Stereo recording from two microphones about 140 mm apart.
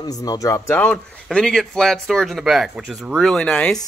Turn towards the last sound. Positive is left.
turn(degrees=5)  # may be behind; listen again after turning